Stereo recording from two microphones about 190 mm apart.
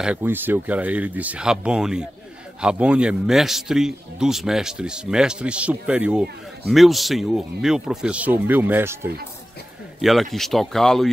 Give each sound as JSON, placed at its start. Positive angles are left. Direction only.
{"t": 0.0, "sound": "a man's voice", "side_deg": -10}
{"t": 10.3, "sound": "a man's voice", "side_deg": 0}